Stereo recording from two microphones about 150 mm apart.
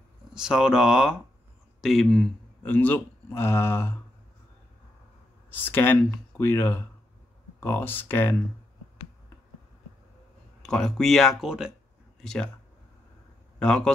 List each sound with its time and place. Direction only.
0.3 s speech: 5° right (ahead or behind)
2.7 s speech: 15° left (ahead or behind)
5.5 s speech: 15° left (ahead or behind)
10.6 s speech: 5° left (ahead or behind)
13.6 s a man's voice: 5° left (ahead or behind)